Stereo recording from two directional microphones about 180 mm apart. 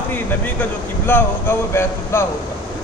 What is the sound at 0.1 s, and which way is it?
Speech, 10° left (ahead or behind).